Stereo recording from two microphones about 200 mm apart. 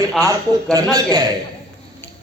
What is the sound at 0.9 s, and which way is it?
Speech, 20° right (ahead or behind).